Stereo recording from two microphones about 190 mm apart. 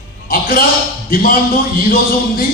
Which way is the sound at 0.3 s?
50° left (ahead or behind).